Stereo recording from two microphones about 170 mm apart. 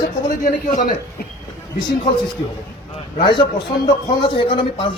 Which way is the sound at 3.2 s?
30° left (ahead or behind).